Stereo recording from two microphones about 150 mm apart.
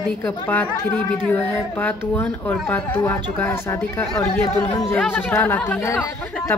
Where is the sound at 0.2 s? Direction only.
10° left (ahead or behind).